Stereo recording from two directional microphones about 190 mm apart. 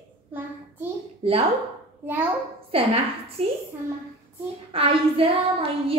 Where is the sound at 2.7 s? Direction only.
30° right (ahead or behind).